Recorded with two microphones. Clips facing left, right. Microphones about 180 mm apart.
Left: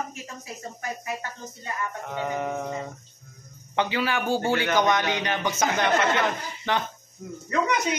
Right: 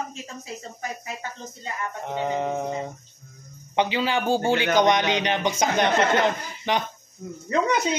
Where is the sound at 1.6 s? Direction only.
20° right (ahead or behind).